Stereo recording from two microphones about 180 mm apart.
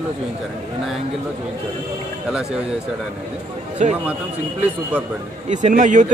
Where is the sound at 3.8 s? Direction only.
45° right (ahead or behind).